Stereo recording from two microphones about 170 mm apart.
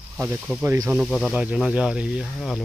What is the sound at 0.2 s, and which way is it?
Speech, 5° right (ahead or behind).